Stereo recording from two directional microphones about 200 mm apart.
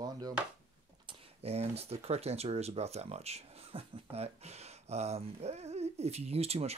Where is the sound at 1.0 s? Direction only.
30° right (ahead or behind).